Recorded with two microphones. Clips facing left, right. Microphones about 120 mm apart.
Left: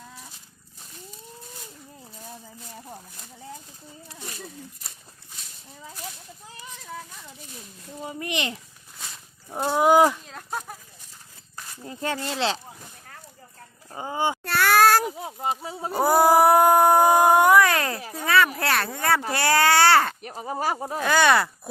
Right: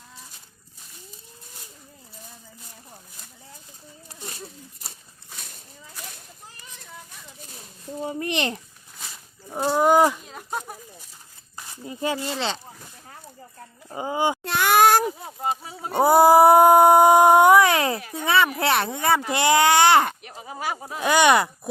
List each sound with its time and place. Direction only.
8.0 s a child's voice: 30° right (ahead or behind)
9.5 s speech: centre (ahead or behind)
11.5 s speech: 10° right (ahead or behind)
13.9 s a sound: 15° right (ahead or behind)
15.0 s a sound: 15° left (ahead or behind)
15.9 s a sound: 25° right (ahead or behind)
19.3 s speech: 20° right (ahead or behind)
20.2 s speech: 40° left (ahead or behind)
21.0 s speech: 15° right (ahead or behind)